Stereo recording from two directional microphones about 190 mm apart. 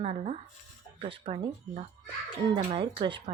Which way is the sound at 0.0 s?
35° right (ahead or behind).